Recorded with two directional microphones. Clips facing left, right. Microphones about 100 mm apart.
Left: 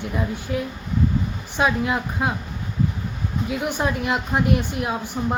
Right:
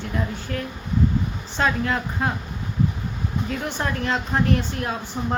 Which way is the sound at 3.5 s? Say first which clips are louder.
Left 5 dB; 15° left (ahead or behind).